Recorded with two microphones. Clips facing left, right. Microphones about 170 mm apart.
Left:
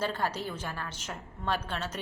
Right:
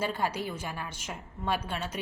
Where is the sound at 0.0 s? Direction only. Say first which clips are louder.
Right 1 dB; 10° right (ahead or behind).